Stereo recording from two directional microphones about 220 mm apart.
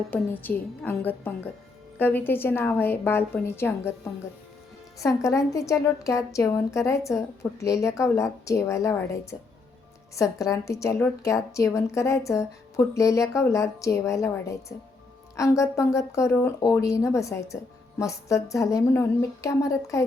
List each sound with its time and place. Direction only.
0.1 s a woman's voice: 10° left (ahead or behind)
4.9 s a woman's voice: 15° left (ahead or behind)
10.2 s a woman's voice: 15° left (ahead or behind)